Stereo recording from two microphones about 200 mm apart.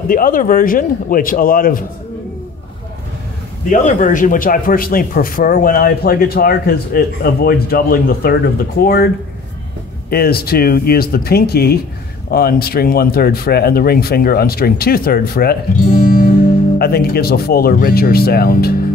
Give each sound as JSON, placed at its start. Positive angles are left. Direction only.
{"t": 0.1, "sound": "speech", "side_deg": 45}
{"t": 3.8, "sound": "speech", "side_deg": 40}
{"t": 10.0, "sound": "speech", "side_deg": 50}